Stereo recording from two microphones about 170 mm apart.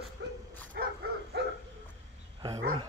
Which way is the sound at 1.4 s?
80° right.